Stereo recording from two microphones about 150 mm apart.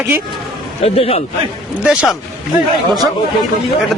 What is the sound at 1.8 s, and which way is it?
Speech, 5° right (ahead or behind).